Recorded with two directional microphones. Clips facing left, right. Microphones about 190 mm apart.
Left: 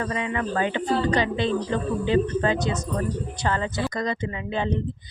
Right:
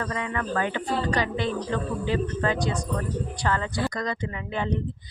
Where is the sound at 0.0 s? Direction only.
20° left (ahead or behind).